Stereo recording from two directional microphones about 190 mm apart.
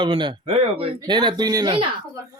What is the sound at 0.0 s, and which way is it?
Speech, 25° right (ahead or behind).